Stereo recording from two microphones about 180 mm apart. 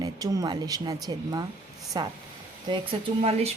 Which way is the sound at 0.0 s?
20° right (ahead or behind).